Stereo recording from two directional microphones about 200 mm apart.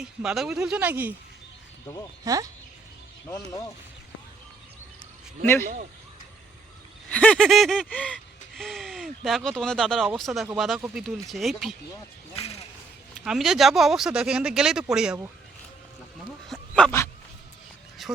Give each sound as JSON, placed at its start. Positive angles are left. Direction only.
{"t": 0.0, "sound": "gasp", "side_deg": -5}
{"t": 2.2, "sound": "speech", "side_deg": -15}
{"t": 3.2, "sound": "speech", "side_deg": 15}
{"t": 5.6, "sound": "speech", "side_deg": -40}
{"t": 7.1, "sound": "gasp", "side_deg": 5}
{"t": 12.4, "sound": "speech", "side_deg": 30}
{"t": 13.2, "sound": "gasp", "side_deg": 0}
{"t": 16.5, "sound": "dog", "side_deg": 5}
{"t": 18.0, "sound": "a sound", "side_deg": 0}